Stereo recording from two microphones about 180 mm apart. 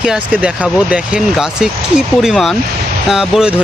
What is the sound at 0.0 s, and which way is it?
Speech, 5° right (ahead or behind).